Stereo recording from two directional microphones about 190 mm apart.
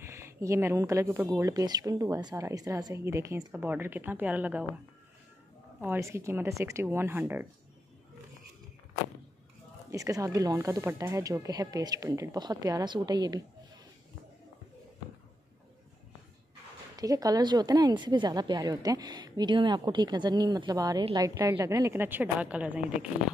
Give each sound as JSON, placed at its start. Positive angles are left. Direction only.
{"t": 0.0, "sound": "speech", "side_deg": -15}
{"t": 5.8, "sound": "speech", "side_deg": -15}
{"t": 9.8, "sound": "speech", "side_deg": -15}
{"t": 16.9, "sound": "speech", "side_deg": -20}